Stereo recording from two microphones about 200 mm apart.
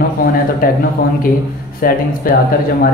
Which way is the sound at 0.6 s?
45° left (ahead or behind).